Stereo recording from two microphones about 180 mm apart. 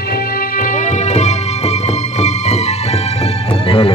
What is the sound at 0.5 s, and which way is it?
Music, 50° left (ahead or behind).